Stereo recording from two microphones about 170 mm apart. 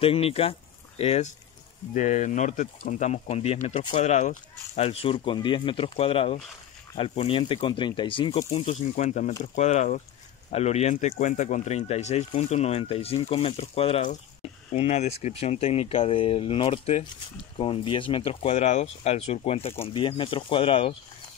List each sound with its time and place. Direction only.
0.0 s speech: 35° left (ahead or behind)
2.0 s speech: 45° left (ahead or behind); by 8.5 s 25° left (ahead or behind)
8.5 s speech: 40° left (ahead or behind)